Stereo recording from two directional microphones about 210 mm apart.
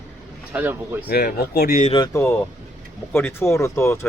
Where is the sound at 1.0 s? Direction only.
50° left (ahead or behind).